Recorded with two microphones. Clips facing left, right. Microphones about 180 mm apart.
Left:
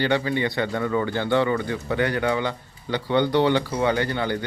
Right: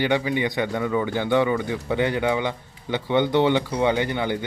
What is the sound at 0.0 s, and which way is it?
Speech, 15° right (ahead or behind).